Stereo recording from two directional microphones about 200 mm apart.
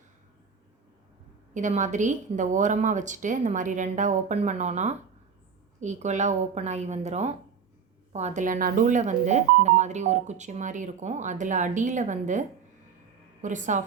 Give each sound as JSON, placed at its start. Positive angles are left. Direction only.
{"t": 1.5, "sound": "speech", "side_deg": -40}